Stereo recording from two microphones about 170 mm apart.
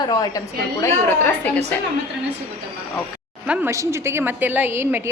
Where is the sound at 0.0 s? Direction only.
20° left (ahead or behind).